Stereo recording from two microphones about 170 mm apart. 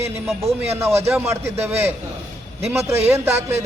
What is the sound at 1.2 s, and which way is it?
Speech, 15° right (ahead or behind).